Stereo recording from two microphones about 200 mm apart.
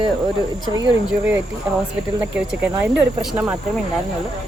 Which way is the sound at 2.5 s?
5° right (ahead or behind).